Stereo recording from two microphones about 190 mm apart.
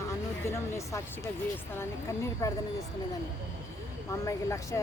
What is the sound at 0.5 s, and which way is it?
Speech, 15° left (ahead or behind).